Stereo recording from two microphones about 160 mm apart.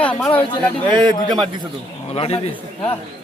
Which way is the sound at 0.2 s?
10° left (ahead or behind).